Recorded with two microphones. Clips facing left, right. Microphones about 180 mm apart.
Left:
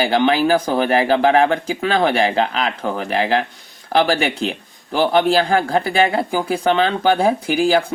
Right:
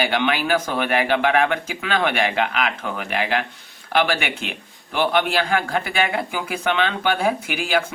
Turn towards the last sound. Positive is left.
turn(degrees=35)  # may be behind; listen again after turning